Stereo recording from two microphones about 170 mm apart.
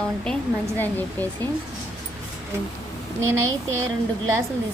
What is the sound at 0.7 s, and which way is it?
Speech, 10° left (ahead or behind).